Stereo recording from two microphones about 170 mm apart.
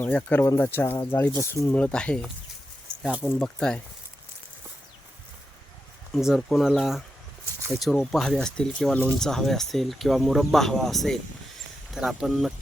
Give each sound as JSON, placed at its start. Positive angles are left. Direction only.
{"t": 0.0, "sound": "speech", "side_deg": 10}
{"t": 1.8, "sound": "speech", "side_deg": 5}
{"t": 3.0, "sound": "speech", "side_deg": -10}
{"t": 3.2, "sound": "speech", "side_deg": 5}
{"t": 6.1, "sound": "speech", "side_deg": 0}